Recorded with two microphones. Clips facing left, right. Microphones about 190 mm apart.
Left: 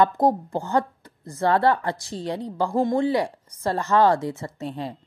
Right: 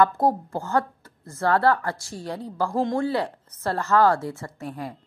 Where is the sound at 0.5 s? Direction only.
15° left (ahead or behind).